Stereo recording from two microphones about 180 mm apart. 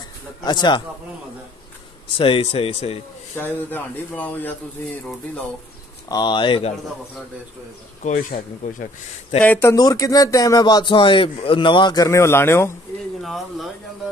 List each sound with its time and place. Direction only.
0.4 s speech: 25° left (ahead or behind)
2.1 s speech: 30° left (ahead or behind)
3.3 s speech: 10° left (ahead or behind)
6.0 s speech: 25° left (ahead or behind)
8.0 s speech: 45° left (ahead or behind)
9.4 s speech: 10° left (ahead or behind)
13.2 s speech: centre (ahead or behind)